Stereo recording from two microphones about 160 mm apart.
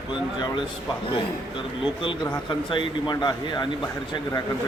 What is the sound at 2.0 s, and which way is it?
A man's voice, 30° left (ahead or behind).